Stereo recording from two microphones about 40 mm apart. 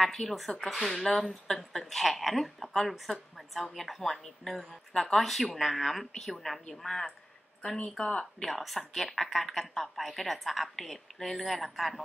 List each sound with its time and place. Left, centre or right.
0.0 s a woman's voice: centre
8.0 s speech: left
8.5 s a woman's voice: centre